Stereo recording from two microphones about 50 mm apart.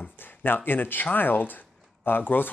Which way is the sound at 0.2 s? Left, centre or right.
Left.